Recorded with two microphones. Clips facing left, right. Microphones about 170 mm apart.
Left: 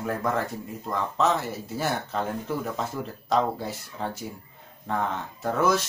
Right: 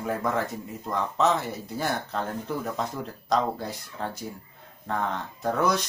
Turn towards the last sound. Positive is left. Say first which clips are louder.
# left 1 dB
turn(degrees=5)  # may be behind; listen again after turning